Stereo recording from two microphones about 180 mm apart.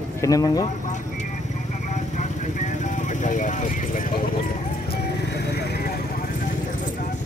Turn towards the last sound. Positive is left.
turn(degrees=65)  # may be behind; listen again after turning